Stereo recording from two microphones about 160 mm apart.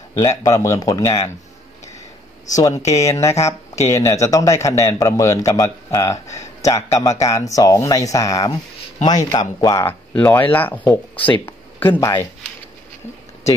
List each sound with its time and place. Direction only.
0.4 s speech: 20° left (ahead or behind)
2.8 s speech: 20° left (ahead or behind)
9.8 s speech: 15° left (ahead or behind)